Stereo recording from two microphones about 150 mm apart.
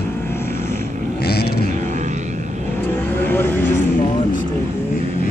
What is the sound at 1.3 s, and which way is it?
Vehicle, 90° left.